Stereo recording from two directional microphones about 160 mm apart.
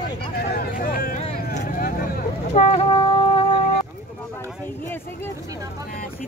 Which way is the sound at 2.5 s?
40° left (ahead or behind).